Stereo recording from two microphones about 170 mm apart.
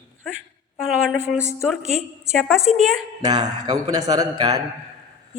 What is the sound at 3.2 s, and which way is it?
A man's voice, 25° right (ahead or behind).